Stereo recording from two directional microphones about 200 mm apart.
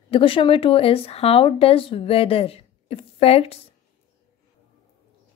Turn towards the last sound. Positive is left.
turn(degrees=30)  # may be behind; listen again after turning